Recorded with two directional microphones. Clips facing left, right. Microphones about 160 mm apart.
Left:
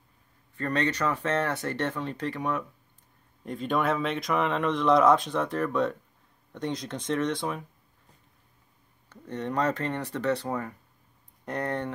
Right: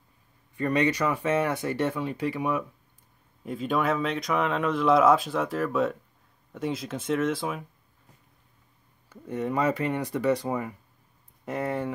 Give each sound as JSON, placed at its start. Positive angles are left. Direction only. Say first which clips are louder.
{"t": 0.6, "sound": "speech", "louder": "right 3 dB", "side_deg": -10}
{"t": 9.1, "sound": "speech", "louder": "right 2 dB", "side_deg": -10}